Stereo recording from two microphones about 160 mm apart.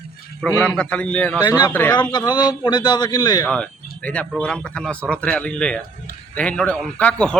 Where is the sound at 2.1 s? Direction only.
25° left (ahead or behind).